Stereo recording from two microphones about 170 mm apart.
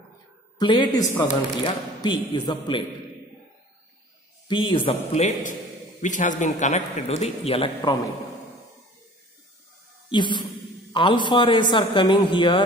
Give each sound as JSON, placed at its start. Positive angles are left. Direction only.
{"t": 0.6, "sound": "a man's voice", "side_deg": 25}
{"t": 4.5, "sound": "a man's voice", "side_deg": 30}
{"t": 10.1, "sound": "a man's voice", "side_deg": 25}